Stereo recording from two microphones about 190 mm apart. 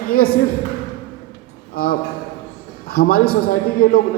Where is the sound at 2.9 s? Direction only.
50° left (ahead or behind).